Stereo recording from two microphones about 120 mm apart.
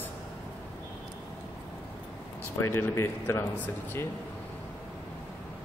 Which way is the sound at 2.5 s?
20° left (ahead or behind).